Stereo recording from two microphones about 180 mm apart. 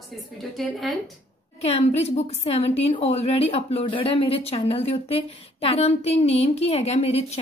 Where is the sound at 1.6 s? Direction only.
35° left (ahead or behind).